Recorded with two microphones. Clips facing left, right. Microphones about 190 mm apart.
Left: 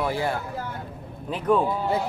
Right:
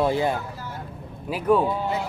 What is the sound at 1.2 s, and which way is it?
Speech, 5° right (ahead or behind).